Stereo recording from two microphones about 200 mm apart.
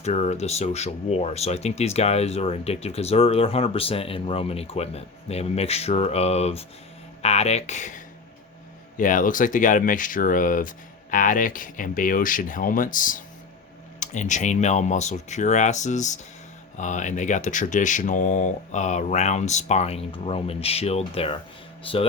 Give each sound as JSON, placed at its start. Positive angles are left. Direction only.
{"t": 0.0, "sound": "speech", "side_deg": 35}